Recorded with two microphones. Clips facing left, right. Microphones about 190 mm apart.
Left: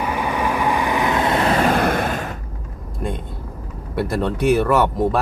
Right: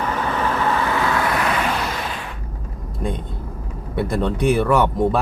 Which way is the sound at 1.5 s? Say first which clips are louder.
Left 6 dB; 45° left (ahead or behind).